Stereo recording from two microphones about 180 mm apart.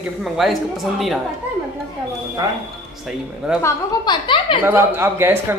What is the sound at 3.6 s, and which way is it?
A woman's voice, 25° left (ahead or behind).